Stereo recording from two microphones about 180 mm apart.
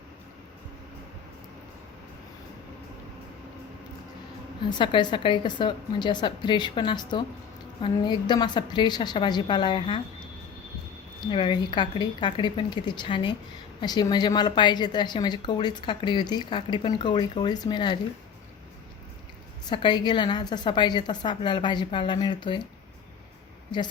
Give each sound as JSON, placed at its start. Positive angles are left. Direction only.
{"t": 4.8, "sound": "a woman's voice", "side_deg": 25}
{"t": 11.2, "sound": "a woman's voice", "side_deg": 30}
{"t": 19.7, "sound": "a woman's voice", "side_deg": 25}